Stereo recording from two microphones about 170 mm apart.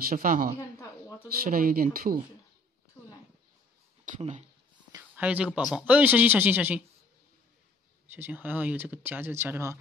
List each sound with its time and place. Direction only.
0.1 s speech: 55° right (ahead or behind)
0.6 s a sound: 15° left (ahead or behind)
1.4 s speech: 60° right (ahead or behind)
4.2 s speech: 40° right (ahead or behind)
5.1 s speech: 10° right (ahead or behind)
8.1 s speech: 10° right (ahead or behind)